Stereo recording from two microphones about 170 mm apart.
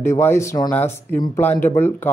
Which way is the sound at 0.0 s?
15° left (ahead or behind).